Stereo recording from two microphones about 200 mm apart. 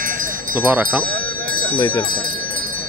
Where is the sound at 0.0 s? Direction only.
45° right (ahead or behind).